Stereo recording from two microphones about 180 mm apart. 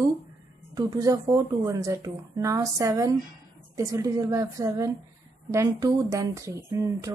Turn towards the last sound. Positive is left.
turn(degrees=-15)  # may be behind; listen again after turning